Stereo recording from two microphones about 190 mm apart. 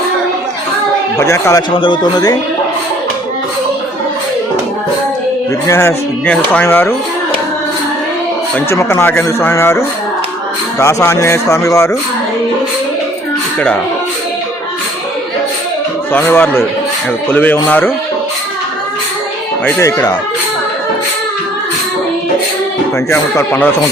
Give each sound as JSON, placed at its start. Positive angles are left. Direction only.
{"t": 1.2, "sound": "a man's voice", "side_deg": 15}
{"t": 1.7, "sound": "speech", "side_deg": 25}
{"t": 5.6, "sound": "a man's voice", "side_deg": 15}
{"t": 8.5, "sound": "a man's voice", "side_deg": 15}
{"t": 10.8, "sound": "a man's voice", "side_deg": 15}
{"t": 16.1, "sound": "a man's voice", "side_deg": 10}
{"t": 19.6, "sound": "a man's voice", "side_deg": 15}
{"t": 23.0, "sound": "a man's voice", "side_deg": 15}